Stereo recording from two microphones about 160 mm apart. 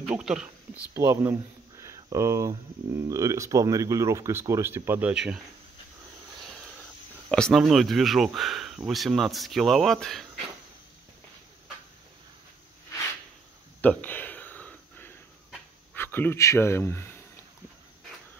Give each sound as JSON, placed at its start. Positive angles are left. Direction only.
{"t": 0.0, "sound": "speech", "side_deg": -5}
{"t": 0.9, "sound": "speech", "side_deg": -15}
{"t": 6.3, "sound": "a sound", "side_deg": 0}
{"t": 8.4, "sound": "speech", "side_deg": 0}
{"t": 13.7, "sound": "a sound", "side_deg": 10}
{"t": 15.9, "sound": "speech", "side_deg": 10}